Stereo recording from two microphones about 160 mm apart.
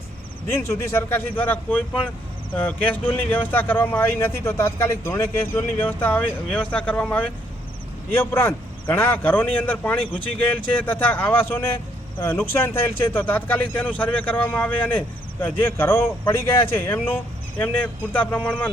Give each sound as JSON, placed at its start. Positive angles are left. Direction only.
{"t": 0.4, "sound": "speech", "side_deg": 15}